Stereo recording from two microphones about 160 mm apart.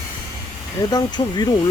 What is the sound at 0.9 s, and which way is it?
Speech, 25° left (ahead or behind).